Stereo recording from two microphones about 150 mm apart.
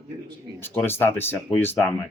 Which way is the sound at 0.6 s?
15° left (ahead or behind).